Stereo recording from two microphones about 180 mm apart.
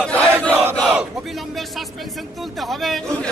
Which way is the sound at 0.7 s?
5° right (ahead or behind).